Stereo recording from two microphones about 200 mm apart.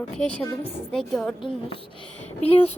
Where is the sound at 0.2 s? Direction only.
5° left (ahead or behind).